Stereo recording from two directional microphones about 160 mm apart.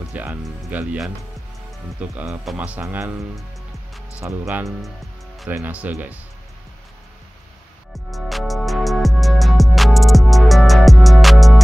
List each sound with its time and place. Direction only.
0.1 s speech: 5° right (ahead or behind)
4.2 s speech: 15° right (ahead or behind)
7.9 s music: centre (ahead or behind)